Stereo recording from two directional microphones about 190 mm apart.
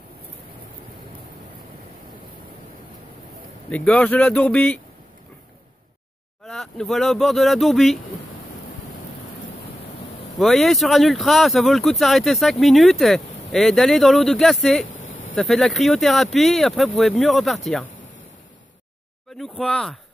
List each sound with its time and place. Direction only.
3.7 s speech: 5° left (ahead or behind)
6.4 s speech: centre (ahead or behind)
10.3 s speech: centre (ahead or behind)
14.9 s a sound: 90° left
15.3 s speech: centre (ahead or behind)
19.3 s speech: centre (ahead or behind)